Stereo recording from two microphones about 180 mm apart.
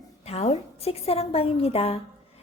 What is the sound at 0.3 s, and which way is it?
Speech, 35° left (ahead or behind).